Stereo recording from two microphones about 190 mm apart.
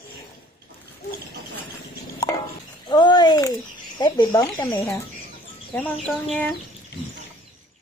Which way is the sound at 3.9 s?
20° left (ahead or behind).